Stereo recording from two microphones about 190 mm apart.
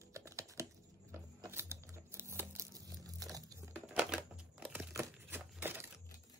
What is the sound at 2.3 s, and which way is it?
Crumpling, 15° right (ahead or behind).